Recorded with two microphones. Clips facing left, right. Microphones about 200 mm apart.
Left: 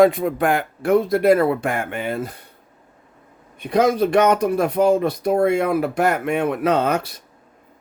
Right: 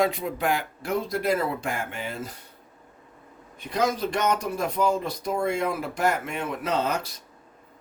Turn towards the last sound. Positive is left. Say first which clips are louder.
# left 7 dB
turn(degrees=60)  # may be behind; listen again after turning